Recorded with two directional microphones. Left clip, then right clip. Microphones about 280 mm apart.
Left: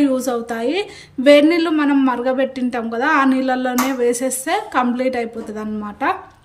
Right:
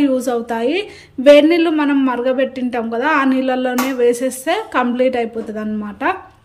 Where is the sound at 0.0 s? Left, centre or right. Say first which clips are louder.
Right 2 dB; centre.